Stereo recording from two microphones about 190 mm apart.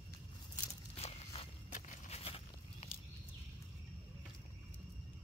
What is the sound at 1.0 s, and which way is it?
Walk, 35° left (ahead or behind).